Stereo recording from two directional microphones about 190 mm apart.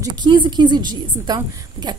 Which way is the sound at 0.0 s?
25° right (ahead or behind).